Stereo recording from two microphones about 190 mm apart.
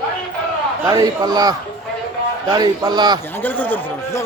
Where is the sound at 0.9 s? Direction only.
20° right (ahead or behind).